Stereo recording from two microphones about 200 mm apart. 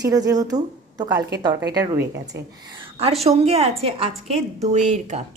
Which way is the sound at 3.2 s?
30° right (ahead or behind).